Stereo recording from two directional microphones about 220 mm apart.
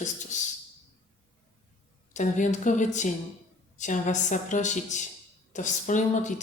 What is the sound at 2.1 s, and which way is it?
A woman's voice, 35° left (ahead or behind).